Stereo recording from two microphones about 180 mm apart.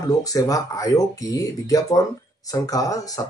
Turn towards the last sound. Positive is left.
turn(degrees=20)  # may be behind; listen again after turning